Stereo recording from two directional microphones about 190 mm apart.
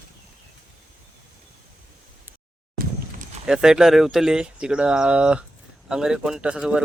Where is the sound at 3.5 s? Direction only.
5° right (ahead or behind).